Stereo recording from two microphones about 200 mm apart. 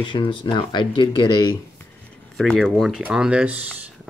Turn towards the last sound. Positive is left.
turn(degrees=-5)  # may be behind; listen again after turning